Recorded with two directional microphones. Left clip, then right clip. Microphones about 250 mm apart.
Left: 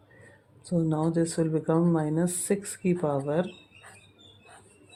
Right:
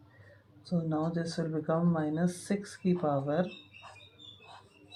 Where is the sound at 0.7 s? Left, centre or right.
Left.